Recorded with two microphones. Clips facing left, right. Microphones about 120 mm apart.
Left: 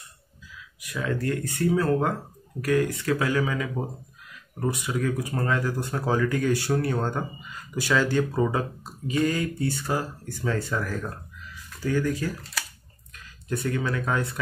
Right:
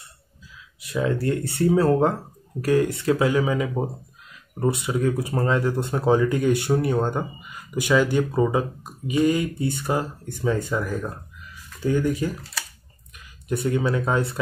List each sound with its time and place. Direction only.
0.7 s speech: 25° right (ahead or behind)
13.5 s speech: 20° right (ahead or behind)